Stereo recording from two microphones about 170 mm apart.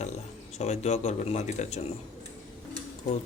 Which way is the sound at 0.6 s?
40° left (ahead or behind).